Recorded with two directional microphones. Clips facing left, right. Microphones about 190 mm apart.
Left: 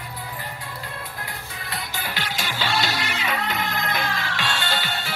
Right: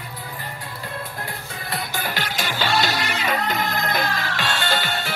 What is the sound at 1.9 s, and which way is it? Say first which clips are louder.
Music: right 2 dB; 45° right (ahead or behind).